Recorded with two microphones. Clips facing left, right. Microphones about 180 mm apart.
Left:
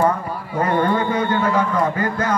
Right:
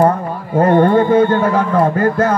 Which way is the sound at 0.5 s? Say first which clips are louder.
Right 8 dB; 50° right (ahead or behind).